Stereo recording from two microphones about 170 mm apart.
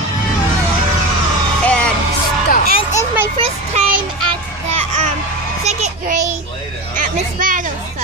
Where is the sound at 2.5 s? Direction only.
55° left (ahead or behind).